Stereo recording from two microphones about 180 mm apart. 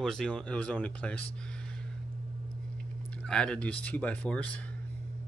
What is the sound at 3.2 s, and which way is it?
Speech, 5° left (ahead or behind).